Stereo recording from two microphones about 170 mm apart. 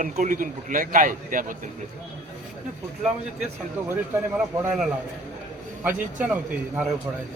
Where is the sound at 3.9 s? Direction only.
10° right (ahead or behind).